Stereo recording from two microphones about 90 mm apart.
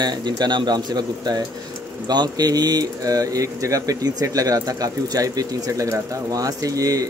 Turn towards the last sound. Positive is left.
turn(degrees=-40)  # may be behind; listen again after turning